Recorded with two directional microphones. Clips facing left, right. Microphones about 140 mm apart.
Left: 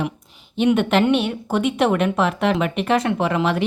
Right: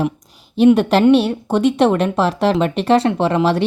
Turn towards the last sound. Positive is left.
turn(degrees=-30)  # may be behind; listen again after turning